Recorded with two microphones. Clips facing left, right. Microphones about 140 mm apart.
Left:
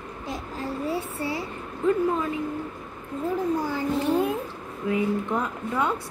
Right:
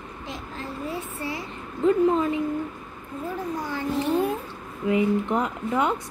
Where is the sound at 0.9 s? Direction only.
30° left (ahead or behind).